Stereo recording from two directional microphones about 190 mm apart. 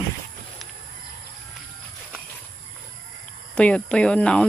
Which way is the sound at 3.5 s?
5° left (ahead or behind).